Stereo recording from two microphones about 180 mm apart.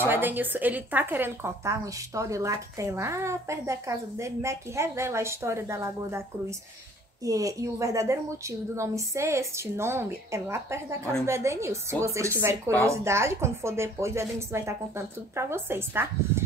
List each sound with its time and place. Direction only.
0.0 s speech: 10° right (ahead or behind)
7.2 s speech: 20° right (ahead or behind)